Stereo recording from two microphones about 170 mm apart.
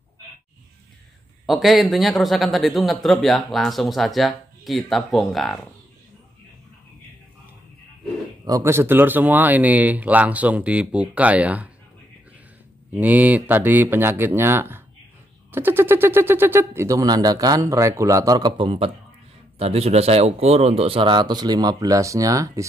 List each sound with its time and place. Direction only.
1.4 s a man's voice: centre (ahead or behind)
8.5 s a man's voice: 20° right (ahead or behind)
12.9 s a man's voice: 10° right (ahead or behind)